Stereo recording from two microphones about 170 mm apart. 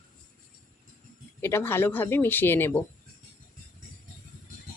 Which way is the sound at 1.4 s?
15° left (ahead or behind).